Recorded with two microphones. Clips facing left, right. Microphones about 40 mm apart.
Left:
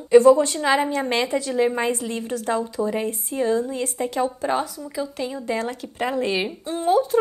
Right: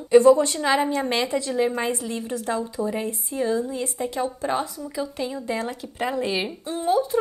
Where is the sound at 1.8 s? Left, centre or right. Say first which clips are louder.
Left 2 dB; left.